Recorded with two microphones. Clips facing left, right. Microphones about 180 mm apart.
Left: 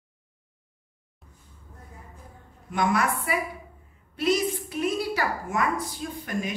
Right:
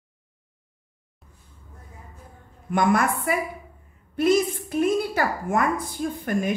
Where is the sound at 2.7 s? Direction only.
50° right (ahead or behind).